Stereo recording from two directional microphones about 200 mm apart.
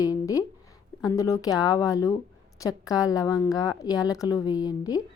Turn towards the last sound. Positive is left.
turn(degrees=20)  # may be behind; listen again after turning